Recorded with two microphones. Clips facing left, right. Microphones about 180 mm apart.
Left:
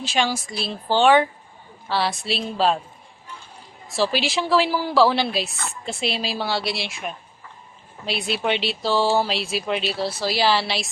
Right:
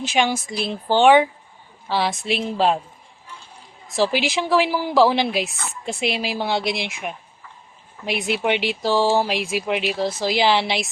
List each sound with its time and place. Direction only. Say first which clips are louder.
0.0 s speech: right 2 dB; 20° right (ahead or behind)
3.8 s speech: right 2 dB; 15° right (ahead or behind)